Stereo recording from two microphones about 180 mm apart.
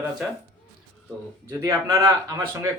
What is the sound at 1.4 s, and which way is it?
Speech, 15° right (ahead or behind).